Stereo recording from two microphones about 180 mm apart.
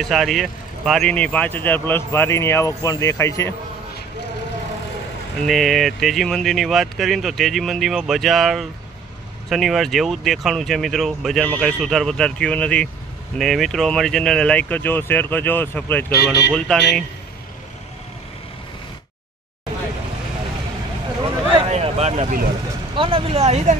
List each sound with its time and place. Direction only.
0.0 s speech: centre (ahead or behind); by 3.5 s 15° left (ahead or behind)
5.5 s speech: centre (ahead or behind)
16.1 s speech: 60° left (ahead or behind)
16.5 s speech: 5° left (ahead or behind)
21.2 s a sound: 30° right (ahead or behind)
22.9 s speech: 30° right (ahead or behind)